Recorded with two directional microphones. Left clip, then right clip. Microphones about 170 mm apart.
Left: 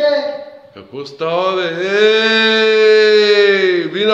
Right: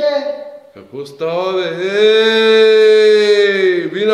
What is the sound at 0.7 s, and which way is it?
Mantra, 10° left (ahead or behind).